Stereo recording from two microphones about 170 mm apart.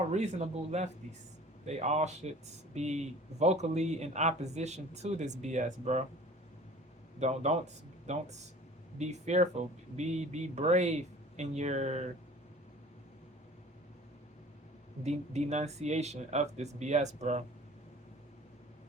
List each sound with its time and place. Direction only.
0.1 s speech: 40° right (ahead or behind)
7.2 s speech: 40° right (ahead or behind)
15.0 s speech: 40° right (ahead or behind)